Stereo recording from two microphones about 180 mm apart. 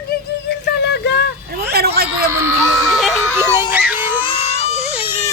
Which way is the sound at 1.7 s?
65° right (ahead or behind).